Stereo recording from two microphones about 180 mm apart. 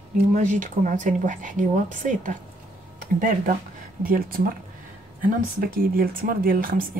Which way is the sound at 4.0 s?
55° right (ahead or behind).